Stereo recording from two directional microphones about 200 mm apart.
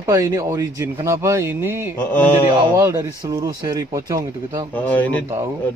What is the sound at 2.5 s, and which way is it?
Speech, 15° right (ahead or behind).